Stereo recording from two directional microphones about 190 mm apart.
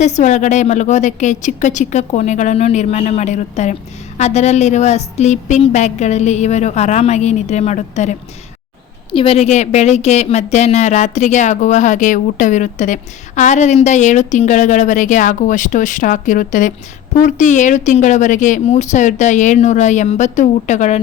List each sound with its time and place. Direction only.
0.0 s a woman's voice: 35° left (ahead or behind)
9.1 s a woman's voice: 30° left (ahead or behind)